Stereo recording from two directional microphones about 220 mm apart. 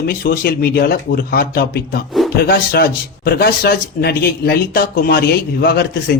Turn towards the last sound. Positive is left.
turn(degrees=45)  # may be behind; listen again after turning